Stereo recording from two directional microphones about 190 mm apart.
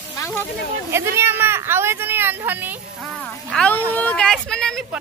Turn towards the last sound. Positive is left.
turn(degrees=0)  # may be behind; listen again after turning